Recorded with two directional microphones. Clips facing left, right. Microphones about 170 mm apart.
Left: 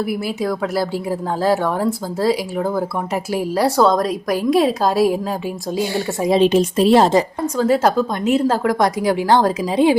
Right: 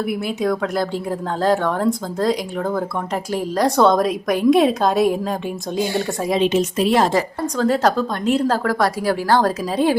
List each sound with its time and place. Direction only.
0.1 s a woman's voice: centre (ahead or behind)
6.3 s a woman's voice: 35° left (ahead or behind)
7.6 s a woman's voice: 5° left (ahead or behind)